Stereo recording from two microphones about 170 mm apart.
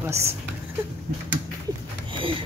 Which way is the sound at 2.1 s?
30° right (ahead or behind).